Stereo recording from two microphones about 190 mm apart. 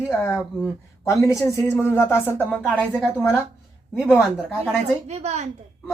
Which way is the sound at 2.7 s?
5° right (ahead or behind).